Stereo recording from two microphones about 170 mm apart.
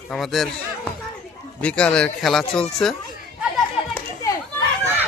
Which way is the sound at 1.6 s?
5° left (ahead or behind).